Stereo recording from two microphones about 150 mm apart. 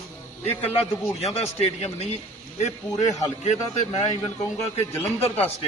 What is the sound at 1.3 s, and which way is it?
Speech, 45° left (ahead or behind).